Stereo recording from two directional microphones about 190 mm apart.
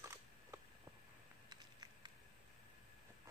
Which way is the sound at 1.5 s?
20° right (ahead or behind).